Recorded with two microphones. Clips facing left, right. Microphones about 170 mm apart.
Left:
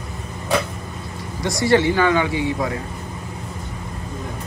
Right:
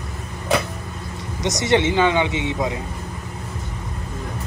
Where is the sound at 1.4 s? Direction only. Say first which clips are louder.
Left 2 dB; 20° right (ahead or behind).